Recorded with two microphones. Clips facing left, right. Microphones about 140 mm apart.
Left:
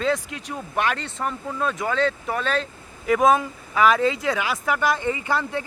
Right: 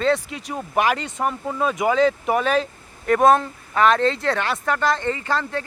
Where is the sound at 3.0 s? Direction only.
Centre (ahead or behind).